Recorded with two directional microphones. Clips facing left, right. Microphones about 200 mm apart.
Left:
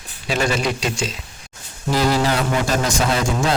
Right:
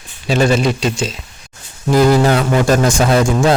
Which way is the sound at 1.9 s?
50° right (ahead or behind).